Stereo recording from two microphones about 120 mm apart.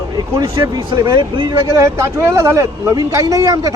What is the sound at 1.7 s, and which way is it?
Speech, 25° right (ahead or behind).